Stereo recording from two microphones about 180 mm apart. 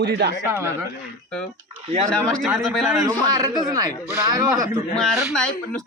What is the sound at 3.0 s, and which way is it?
A man's voice, 20° right (ahead or behind).